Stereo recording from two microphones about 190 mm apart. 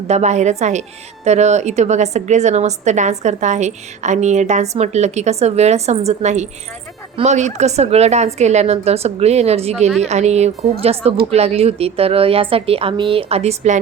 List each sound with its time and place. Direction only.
0.1 s a woman's voice: 35° right (ahead or behind)